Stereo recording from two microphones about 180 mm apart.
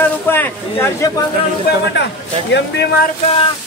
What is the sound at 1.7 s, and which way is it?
Speech, 60° left (ahead or behind).